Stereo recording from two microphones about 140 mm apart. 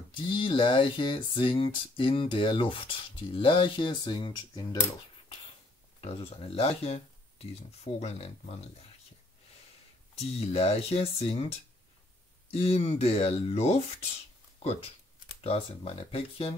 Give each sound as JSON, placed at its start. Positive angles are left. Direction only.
{"t": 0.1, "sound": "speech", "side_deg": 35}
{"t": 5.9, "sound": "speech", "side_deg": 45}
{"t": 10.1, "sound": "speech", "side_deg": 45}